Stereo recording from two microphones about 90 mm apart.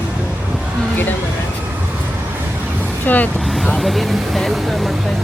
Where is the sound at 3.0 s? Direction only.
20° left (ahead or behind).